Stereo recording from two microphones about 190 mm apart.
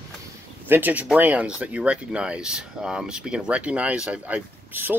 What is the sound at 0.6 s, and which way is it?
Speech, 10° right (ahead or behind).